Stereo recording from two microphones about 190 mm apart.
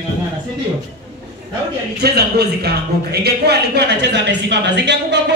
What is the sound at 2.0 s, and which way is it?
A man's voice, 60° right (ahead or behind).